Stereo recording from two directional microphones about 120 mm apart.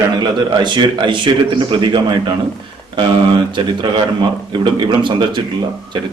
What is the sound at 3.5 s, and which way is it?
A man's voice, 40° right (ahead or behind).